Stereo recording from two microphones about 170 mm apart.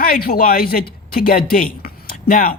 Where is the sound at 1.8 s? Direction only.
55° left (ahead or behind).